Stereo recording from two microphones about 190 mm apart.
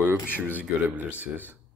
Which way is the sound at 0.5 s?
10° right (ahead or behind).